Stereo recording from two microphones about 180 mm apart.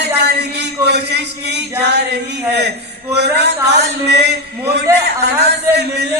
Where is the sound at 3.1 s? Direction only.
70° right (ahead or behind).